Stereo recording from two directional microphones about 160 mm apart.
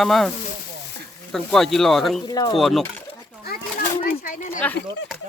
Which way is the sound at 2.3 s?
25° left (ahead or behind).